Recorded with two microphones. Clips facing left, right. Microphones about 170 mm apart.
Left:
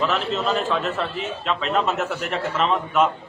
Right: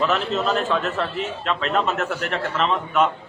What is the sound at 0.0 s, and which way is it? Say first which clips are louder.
A man's voice: right 1 dB; centre (ahead or behind).